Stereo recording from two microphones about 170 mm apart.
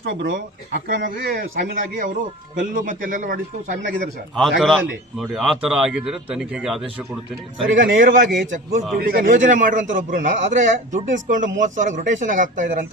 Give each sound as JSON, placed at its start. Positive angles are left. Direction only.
{"t": 0.0, "sound": "a man's voice", "side_deg": -65}
{"t": 4.4, "sound": "a man's voice", "side_deg": 0}
{"t": 7.8, "sound": "a man's voice", "side_deg": -55}